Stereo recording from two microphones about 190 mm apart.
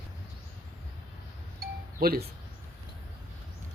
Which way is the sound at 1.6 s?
55° right (ahead or behind).